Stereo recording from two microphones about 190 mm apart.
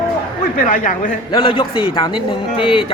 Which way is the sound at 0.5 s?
45° left (ahead or behind).